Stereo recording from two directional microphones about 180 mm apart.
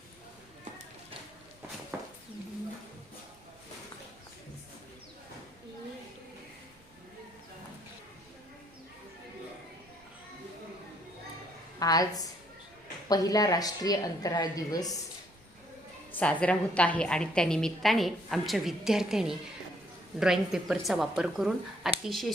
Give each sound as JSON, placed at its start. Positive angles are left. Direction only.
{"t": 1.9, "sound": "a sound", "side_deg": -10}
{"t": 11.8, "sound": "speech", "side_deg": 20}
{"t": 16.1, "sound": "a woman's voice", "side_deg": 5}